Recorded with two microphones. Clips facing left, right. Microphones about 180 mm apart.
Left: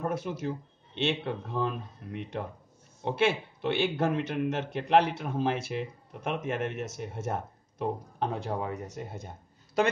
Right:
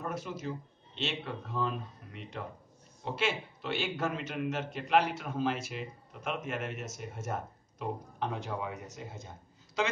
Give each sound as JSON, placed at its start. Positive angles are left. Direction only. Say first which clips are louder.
{"t": 0.0, "sound": "speech", "louder": "left 5 dB", "side_deg": 55}